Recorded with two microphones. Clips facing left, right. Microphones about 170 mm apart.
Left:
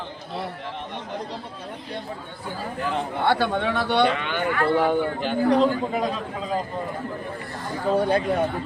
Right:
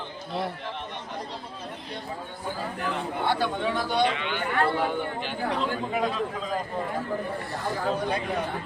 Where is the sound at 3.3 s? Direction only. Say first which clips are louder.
Left 4 dB; 70° left (ahead or behind).